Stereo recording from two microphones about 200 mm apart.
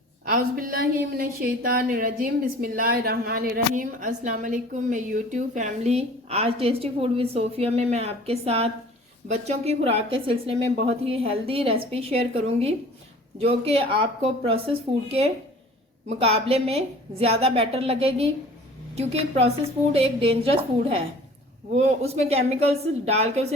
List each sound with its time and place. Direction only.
0.3 s a woman's voice: 50° right (ahead or behind)